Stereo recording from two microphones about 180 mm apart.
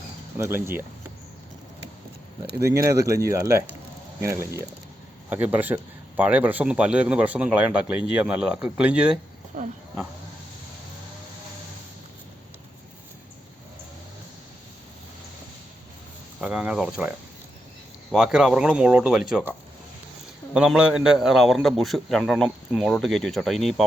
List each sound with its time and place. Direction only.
0.3 s a man's voice: 15° right (ahead or behind)
2.8 s a man's voice: 15° right (ahead or behind)
9.5 s speech: 50° right (ahead or behind)
16.4 s a sound: 5° right (ahead or behind)
18.1 s a man's voice: 5° right (ahead or behind)